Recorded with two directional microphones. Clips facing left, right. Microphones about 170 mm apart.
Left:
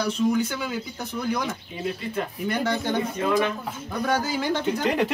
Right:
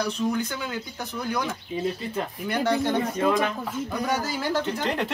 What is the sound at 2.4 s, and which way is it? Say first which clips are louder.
Speech: even; centre (ahead or behind).